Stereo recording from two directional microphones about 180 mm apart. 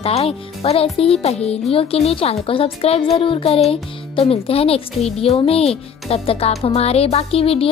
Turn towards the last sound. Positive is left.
turn(degrees=30)  # may be behind; listen again after turning